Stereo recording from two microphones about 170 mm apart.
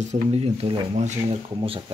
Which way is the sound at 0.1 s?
35° right (ahead or behind).